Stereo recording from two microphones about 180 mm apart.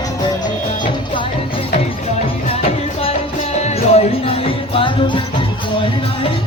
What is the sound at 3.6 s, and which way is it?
Music, 35° left (ahead or behind).